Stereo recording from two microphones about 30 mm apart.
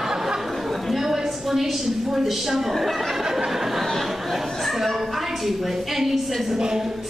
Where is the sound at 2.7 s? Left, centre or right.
Centre.